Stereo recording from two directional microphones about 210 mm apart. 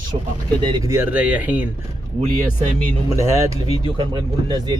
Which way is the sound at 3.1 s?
15° right (ahead or behind).